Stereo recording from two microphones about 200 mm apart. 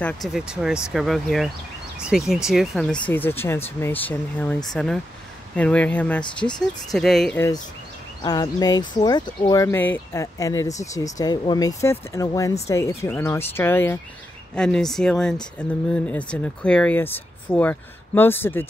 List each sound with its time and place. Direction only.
0.0 s speech: centre (ahead or behind)
8.2 s speech: 20° left (ahead or behind)